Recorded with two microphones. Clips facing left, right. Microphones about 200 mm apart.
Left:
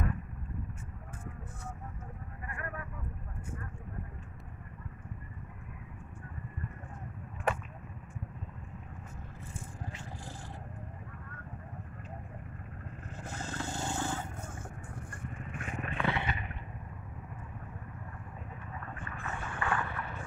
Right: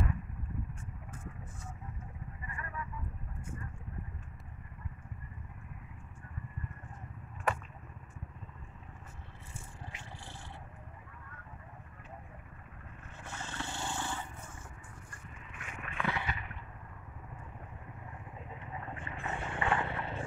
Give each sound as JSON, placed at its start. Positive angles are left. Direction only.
{"t": 2.4, "sound": "sheep", "side_deg": 60}
{"t": 13.2, "sound": "a sound", "side_deg": 40}
{"t": 15.2, "sound": "vehicle", "side_deg": 45}
{"t": 18.8, "sound": "boat", "side_deg": -20}